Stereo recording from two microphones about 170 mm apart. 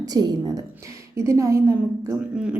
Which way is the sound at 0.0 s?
25° right (ahead or behind).